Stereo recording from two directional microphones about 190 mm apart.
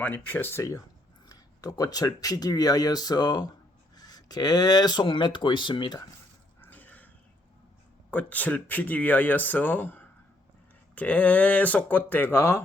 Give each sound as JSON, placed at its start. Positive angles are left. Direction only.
{"t": 0.0, "sound": "speech", "side_deg": 10}
{"t": 6.6, "sound": "a sound", "side_deg": 10}
{"t": 8.1, "sound": "speech", "side_deg": 10}